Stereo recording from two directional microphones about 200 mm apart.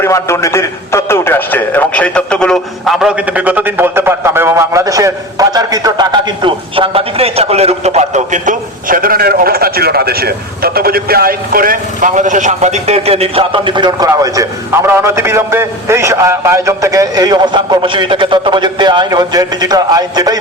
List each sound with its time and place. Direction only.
0.0 s a man's voice: 15° left (ahead or behind); by 20.4 s 20° right (ahead or behind)